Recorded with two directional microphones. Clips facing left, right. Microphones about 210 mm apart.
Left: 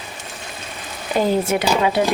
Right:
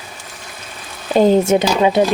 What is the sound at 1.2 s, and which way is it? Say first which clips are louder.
Speech: right 6 dB; 25° right (ahead or behind).